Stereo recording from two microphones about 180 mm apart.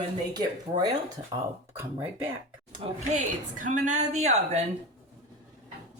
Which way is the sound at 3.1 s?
45° right (ahead or behind).